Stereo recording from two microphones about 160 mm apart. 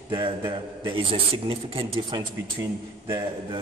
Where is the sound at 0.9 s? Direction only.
35° right (ahead or behind).